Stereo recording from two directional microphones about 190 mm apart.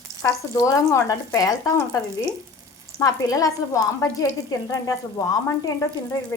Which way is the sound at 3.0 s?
20° left (ahead or behind).